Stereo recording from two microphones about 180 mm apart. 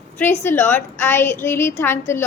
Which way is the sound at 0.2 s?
15° left (ahead or behind).